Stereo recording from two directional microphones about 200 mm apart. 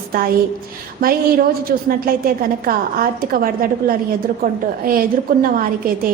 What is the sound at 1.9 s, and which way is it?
A woman's voice, 45° right (ahead or behind).